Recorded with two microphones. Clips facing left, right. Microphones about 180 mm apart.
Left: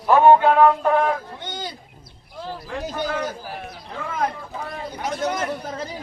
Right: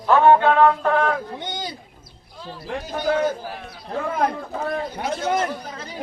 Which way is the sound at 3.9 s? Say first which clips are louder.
Right 4 dB; 55° right (ahead or behind).